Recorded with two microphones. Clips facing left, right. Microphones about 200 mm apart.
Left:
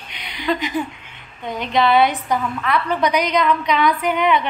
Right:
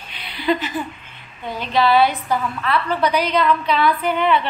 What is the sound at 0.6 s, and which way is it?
A woman's voice, 15° left (ahead or behind).